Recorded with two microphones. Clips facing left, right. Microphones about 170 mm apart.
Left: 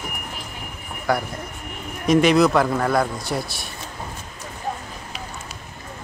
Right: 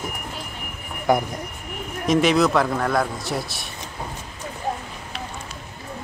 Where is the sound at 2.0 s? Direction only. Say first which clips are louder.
Left 2 dB; centre (ahead or behind).